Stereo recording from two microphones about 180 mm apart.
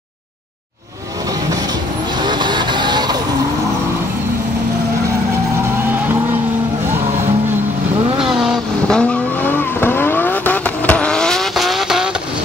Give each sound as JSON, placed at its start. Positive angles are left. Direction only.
{"t": 2.2, "sound": "vehicle", "side_deg": -25}
{"t": 8.4, "sound": "vehicle", "side_deg": 0}